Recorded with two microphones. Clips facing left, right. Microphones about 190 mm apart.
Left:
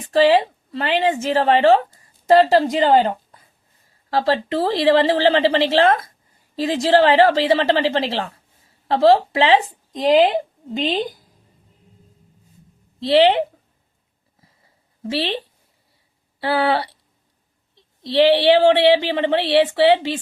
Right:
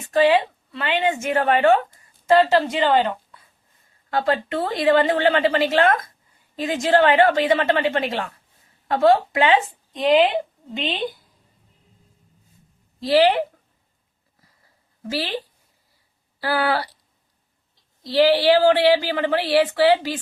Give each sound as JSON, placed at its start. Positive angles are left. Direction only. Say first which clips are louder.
{"t": 0.1, "sound": "a woman's voice", "louder": "left 2 dB", "side_deg": 35}
{"t": 13.0, "sound": "speech", "louder": "left 2 dB", "side_deg": 25}
{"t": 15.1, "sound": "speech", "louder": "left 3 dB", "side_deg": 25}